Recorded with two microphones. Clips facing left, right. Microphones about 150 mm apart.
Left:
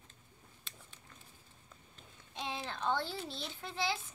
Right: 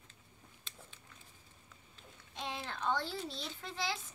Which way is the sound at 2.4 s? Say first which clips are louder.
Left 1 dB; 20° left (ahead or behind).